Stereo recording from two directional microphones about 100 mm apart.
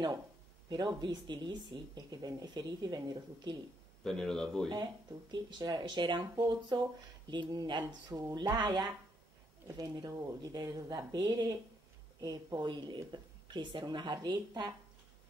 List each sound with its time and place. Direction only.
0.7 s speech: 45° right (ahead or behind)
4.0 s speech: 5° left (ahead or behind)
5.3 s speech: 45° right (ahead or behind)
9.9 s speech: 40° right (ahead or behind)